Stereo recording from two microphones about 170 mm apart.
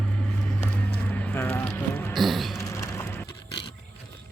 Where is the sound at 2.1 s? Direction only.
Centre (ahead or behind).